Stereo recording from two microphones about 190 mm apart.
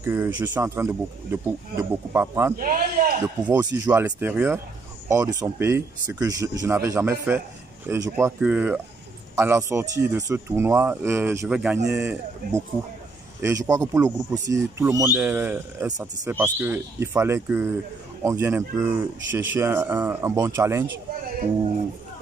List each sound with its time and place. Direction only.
0.0 s a man's voice: 10° right (ahead or behind)
2.5 s a man's voice: 45° right (ahead or behind)
3.5 s a man's voice: 15° right (ahead or behind)